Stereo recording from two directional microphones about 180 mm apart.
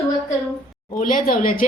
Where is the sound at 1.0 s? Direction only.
50° left (ahead or behind).